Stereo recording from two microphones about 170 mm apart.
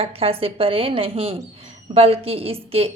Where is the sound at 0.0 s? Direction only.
35° right (ahead or behind).